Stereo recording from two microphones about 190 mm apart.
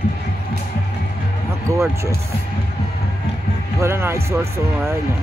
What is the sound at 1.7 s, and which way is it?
Speech, 15° right (ahead or behind).